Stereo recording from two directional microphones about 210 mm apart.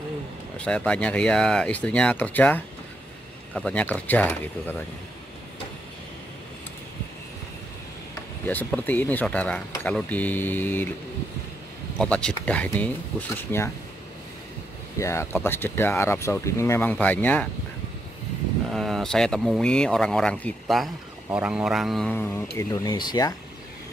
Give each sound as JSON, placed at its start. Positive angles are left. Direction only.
{"t": 0.6, "sound": "speech", "side_deg": 5}
{"t": 8.1, "sound": "speech", "side_deg": 10}
{"t": 12.0, "sound": "speech", "side_deg": 5}
{"t": 15.0, "sound": "speech", "side_deg": 15}
{"t": 18.7, "sound": "speech", "side_deg": 0}
{"t": 22.6, "sound": "speech", "side_deg": 15}